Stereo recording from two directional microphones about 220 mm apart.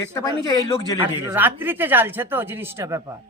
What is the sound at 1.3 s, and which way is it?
Speech, 10° right (ahead or behind).